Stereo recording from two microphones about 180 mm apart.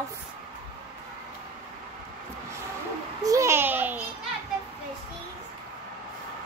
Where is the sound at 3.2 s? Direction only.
15° right (ahead or behind).